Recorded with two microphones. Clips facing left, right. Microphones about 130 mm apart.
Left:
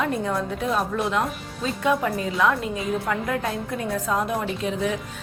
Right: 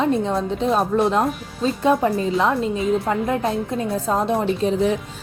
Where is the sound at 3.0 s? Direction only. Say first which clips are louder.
Right 4 dB; 25° right (ahead or behind).